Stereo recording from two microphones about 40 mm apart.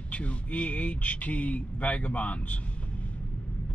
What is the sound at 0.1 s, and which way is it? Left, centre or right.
Speech, left.